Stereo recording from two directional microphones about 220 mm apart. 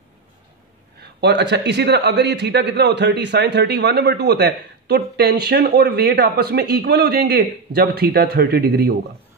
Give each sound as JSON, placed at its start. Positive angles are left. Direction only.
{"t": 1.0, "sound": "a man's voice", "side_deg": -50}